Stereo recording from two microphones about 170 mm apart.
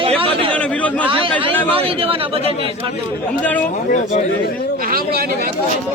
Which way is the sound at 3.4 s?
10° left (ahead or behind).